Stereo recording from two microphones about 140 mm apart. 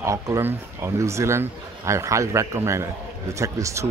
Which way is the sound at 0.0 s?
20° right (ahead or behind).